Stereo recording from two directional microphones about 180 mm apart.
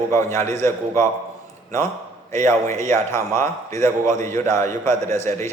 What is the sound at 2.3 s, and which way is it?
A man's voice, 15° left (ahead or behind).